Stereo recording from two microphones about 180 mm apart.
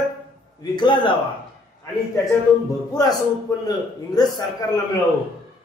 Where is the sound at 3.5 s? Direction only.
20° left (ahead or behind).